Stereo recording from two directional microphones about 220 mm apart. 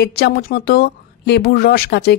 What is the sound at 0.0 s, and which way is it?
Speech, 45° left (ahead or behind).